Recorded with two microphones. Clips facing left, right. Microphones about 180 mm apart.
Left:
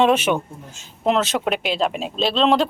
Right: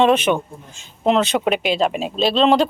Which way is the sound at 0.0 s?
5° left (ahead or behind).